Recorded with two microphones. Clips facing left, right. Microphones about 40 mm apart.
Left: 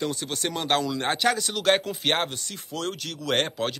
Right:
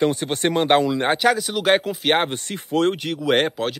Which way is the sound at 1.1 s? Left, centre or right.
Centre.